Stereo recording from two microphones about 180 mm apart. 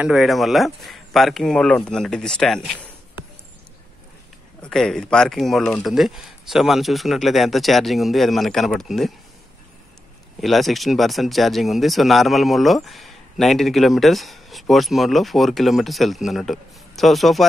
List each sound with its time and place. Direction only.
0.0 s speech: centre (ahead or behind)
4.6 s speech: 5° left (ahead or behind)
10.4 s speech: centre (ahead or behind)